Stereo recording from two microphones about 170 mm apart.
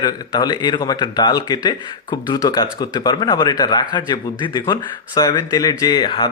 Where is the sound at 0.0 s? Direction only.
25° left (ahead or behind).